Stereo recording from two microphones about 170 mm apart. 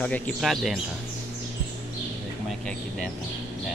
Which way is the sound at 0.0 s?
10° left (ahead or behind).